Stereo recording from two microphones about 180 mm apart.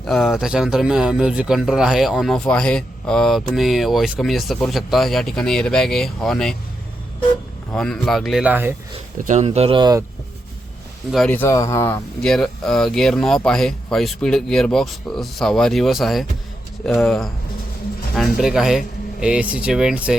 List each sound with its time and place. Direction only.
0.0 s speech: centre (ahead or behind)
7.7 s speech: 5° left (ahead or behind)
9.1 s speech: 45° right (ahead or behind); by 10.0 s 25° right (ahead or behind)
11.1 s speech: 5° left (ahead or behind)
12.2 s speech: 5° left (ahead or behind)
18.3 s speech: centre (ahead or behind)